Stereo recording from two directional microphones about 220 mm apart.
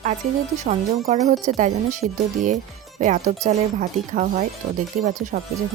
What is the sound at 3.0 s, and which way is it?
Speech, 35° right (ahead or behind).